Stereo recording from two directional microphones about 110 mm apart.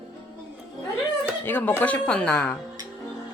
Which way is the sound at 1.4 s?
15° left (ahead or behind).